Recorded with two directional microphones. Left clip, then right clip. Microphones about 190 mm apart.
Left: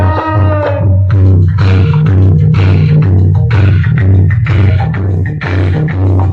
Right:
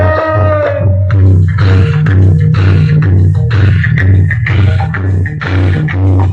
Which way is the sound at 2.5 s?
25° left (ahead or behind).